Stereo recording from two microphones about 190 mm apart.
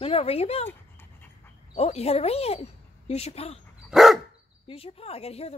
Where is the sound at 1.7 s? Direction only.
35° left (ahead or behind).